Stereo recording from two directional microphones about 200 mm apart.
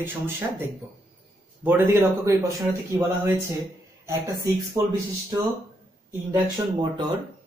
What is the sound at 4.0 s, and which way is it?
Speech, 15° right (ahead or behind).